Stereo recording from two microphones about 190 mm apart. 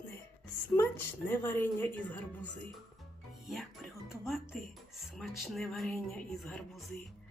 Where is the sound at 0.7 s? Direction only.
10° left (ahead or behind).